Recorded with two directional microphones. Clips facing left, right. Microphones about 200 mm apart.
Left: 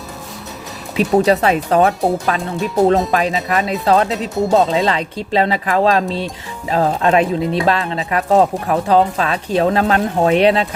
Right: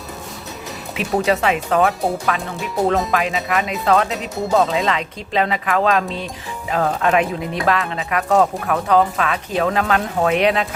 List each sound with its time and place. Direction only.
1.2 s speech: 35° left (ahead or behind)